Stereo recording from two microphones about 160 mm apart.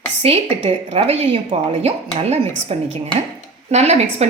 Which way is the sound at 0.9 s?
40° right (ahead or behind).